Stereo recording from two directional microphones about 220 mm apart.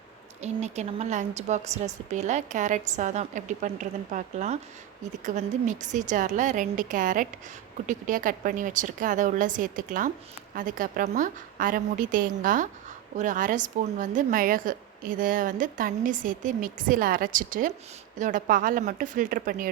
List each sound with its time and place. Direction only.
0.4 s a woman's voice: 30° right (ahead or behind)